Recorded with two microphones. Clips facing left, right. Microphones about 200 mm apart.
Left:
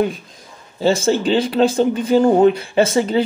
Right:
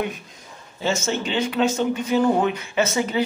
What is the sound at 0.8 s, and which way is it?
Speech, 35° left (ahead or behind).